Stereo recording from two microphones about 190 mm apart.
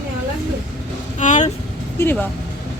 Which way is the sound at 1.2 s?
40° left (ahead or behind).